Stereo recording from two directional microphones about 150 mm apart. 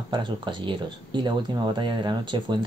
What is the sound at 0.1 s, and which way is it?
Speech, 30° right (ahead or behind).